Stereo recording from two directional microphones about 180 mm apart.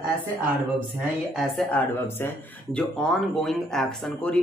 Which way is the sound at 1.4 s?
5° left (ahead or behind).